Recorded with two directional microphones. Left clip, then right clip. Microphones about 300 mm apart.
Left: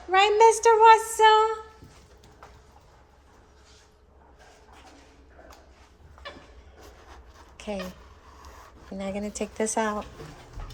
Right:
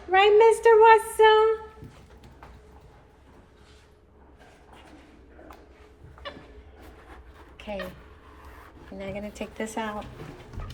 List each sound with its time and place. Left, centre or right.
0.1 s speech: centre
7.5 s a sound: centre
9.0 s speech: centre